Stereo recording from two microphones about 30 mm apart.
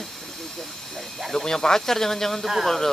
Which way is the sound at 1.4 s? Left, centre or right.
Centre.